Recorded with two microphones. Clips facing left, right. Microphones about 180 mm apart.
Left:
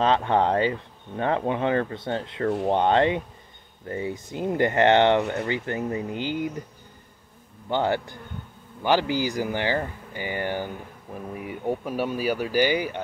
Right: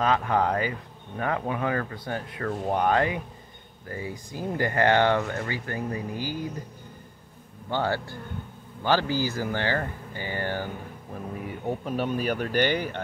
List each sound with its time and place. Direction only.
0.0 s speech: 30° left (ahead or behind)
7.7 s speech: 20° left (ahead or behind)